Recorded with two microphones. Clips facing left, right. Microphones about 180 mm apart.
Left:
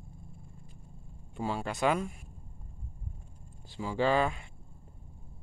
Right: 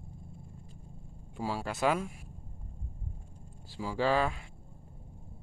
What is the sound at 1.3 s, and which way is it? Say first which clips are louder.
Speech: left 1 dB; 5° right (ahead or behind).